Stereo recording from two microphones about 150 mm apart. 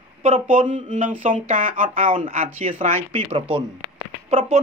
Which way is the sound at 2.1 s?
40° right (ahead or behind).